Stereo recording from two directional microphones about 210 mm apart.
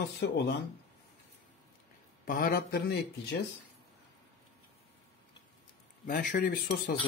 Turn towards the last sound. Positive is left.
turn(degrees=40)  # may be behind; listen again after turning